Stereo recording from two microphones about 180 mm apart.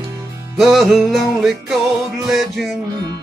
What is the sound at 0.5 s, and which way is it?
Music, centre (ahead or behind).